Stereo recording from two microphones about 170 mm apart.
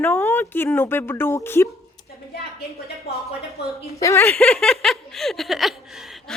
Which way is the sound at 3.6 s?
75° left (ahead or behind).